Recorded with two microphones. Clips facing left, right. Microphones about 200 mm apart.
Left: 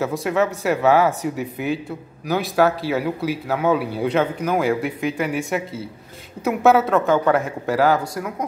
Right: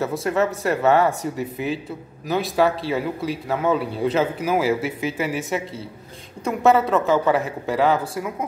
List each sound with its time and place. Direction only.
0.0 s a man's voice: centre (ahead or behind)